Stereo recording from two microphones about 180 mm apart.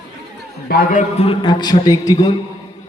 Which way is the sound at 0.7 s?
50° left (ahead or behind).